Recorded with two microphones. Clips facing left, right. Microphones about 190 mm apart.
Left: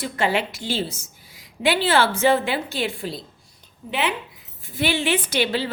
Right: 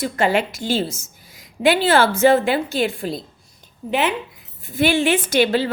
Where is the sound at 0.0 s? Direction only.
45° right (ahead or behind).